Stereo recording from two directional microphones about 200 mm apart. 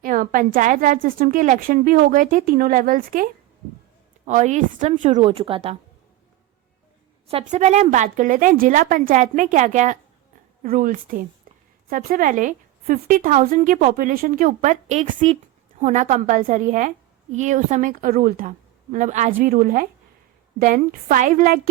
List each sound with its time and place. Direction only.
0.0 s a woman's voice: 45° right (ahead or behind)
4.3 s a woman's voice: 35° right (ahead or behind)
7.3 s a woman's voice: 35° right (ahead or behind)